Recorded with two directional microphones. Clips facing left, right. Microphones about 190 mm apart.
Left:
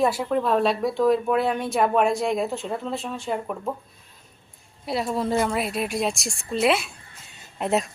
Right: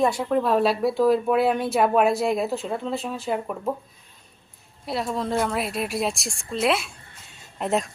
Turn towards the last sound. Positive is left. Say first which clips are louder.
# left 1 dB
turn(degrees=0)  # may be behind; listen again after turning